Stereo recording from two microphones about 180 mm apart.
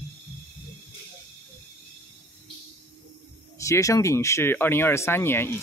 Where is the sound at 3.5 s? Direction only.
15° left (ahead or behind).